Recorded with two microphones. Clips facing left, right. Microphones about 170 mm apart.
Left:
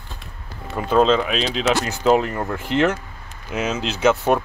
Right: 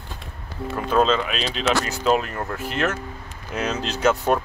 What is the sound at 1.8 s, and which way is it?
Speech, 20° left (ahead or behind).